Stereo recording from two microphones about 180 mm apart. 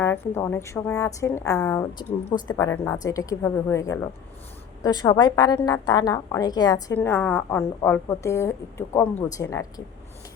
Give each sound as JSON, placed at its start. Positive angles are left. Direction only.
{"t": 0.0, "sound": "a woman's voice", "side_deg": 15}